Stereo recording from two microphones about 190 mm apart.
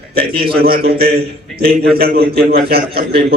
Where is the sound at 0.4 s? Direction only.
55° right (ahead or behind).